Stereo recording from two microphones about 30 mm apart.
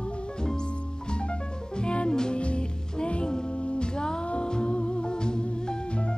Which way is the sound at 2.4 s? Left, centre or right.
Left.